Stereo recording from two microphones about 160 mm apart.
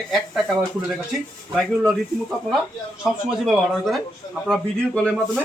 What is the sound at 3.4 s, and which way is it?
Speech, centre (ahead or behind).